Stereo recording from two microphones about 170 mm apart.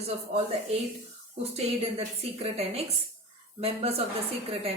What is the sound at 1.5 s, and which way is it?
A woman's voice, 35° right (ahead or behind).